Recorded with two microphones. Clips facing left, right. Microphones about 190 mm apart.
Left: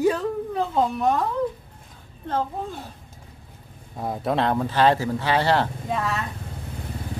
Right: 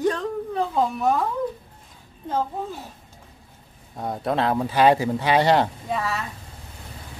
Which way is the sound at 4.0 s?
5° left (ahead or behind).